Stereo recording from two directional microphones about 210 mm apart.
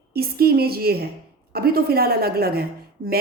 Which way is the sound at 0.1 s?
45° right (ahead or behind).